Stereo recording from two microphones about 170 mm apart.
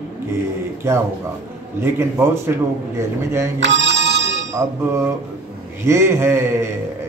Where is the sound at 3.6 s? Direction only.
90° right.